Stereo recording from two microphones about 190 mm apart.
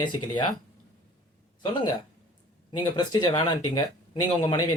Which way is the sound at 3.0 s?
25° left (ahead or behind).